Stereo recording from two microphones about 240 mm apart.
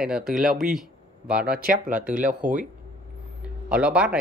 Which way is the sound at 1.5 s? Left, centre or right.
Right.